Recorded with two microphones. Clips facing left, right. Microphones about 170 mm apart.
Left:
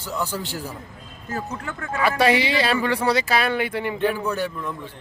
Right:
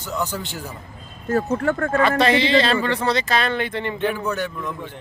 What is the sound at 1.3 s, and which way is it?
Speech, 55° right (ahead or behind).